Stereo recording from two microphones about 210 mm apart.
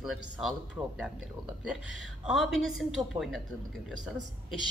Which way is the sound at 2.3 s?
Centre (ahead or behind).